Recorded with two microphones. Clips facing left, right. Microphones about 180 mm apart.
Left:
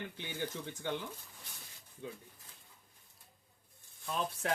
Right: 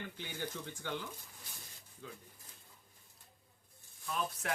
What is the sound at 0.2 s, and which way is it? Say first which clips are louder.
Speech: left 2 dB; 20° left (ahead or behind).